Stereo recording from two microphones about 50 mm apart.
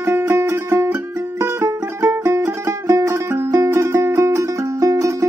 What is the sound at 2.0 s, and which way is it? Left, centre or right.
Music, right.